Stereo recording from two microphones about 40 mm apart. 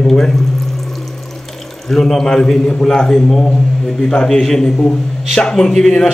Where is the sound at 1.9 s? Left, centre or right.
Centre.